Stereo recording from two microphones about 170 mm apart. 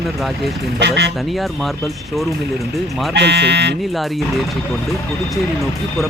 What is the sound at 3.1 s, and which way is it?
Speech, 85° right.